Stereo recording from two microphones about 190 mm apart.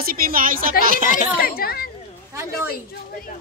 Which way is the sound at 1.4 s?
50° left (ahead or behind).